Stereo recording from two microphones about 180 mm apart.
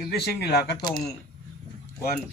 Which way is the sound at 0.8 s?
25° left (ahead or behind).